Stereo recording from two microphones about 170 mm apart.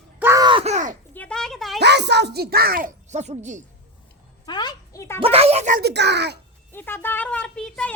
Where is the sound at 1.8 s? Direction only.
85° right; by 2.9 s 60° right (ahead or behind).